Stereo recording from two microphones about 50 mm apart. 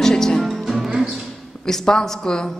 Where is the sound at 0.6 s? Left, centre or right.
Centre.